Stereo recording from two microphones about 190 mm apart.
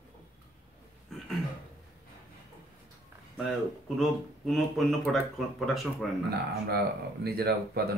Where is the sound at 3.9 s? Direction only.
Centre (ahead or behind).